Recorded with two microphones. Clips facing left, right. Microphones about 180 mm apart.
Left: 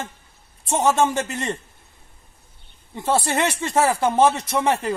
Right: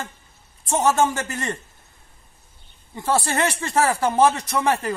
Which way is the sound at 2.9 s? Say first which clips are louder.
Left 1 dB; 25° left (ahead or behind).